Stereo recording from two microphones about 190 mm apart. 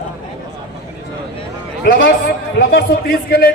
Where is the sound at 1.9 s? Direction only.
50° left (ahead or behind).